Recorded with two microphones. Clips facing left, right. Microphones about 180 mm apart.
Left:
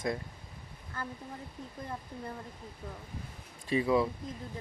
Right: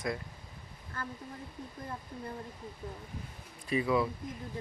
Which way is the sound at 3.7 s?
25° left (ahead or behind).